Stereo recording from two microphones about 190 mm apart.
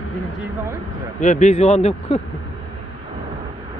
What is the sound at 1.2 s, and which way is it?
A man's voice, 40° left (ahead or behind).